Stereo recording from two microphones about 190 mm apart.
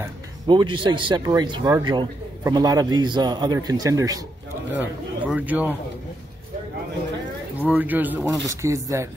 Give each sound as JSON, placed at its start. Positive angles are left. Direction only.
{"t": 0.0, "sound": "a man's voice", "side_deg": -25}
{"t": 7.6, "sound": "a man's voice", "side_deg": -10}